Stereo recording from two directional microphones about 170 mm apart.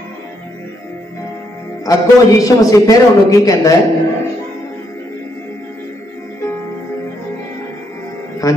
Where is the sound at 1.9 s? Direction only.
20° left (ahead or behind).